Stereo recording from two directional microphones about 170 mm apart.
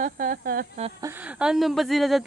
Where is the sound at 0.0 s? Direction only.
55° right (ahead or behind).